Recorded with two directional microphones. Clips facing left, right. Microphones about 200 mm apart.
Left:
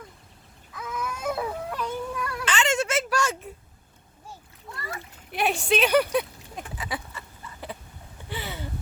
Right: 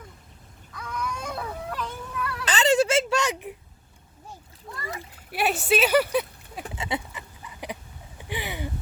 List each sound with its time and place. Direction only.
0.8 s baby cry: 5° left (ahead or behind)
2.4 s baby cry: 35° right (ahead or behind); by 3.5 s 15° right (ahead or behind)
5.3 s speech: 5° right (ahead or behind)
6.7 s a sound: 25° right (ahead or behind)